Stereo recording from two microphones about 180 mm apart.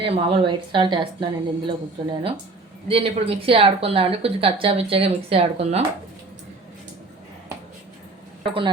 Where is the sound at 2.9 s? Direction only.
35° right (ahead or behind).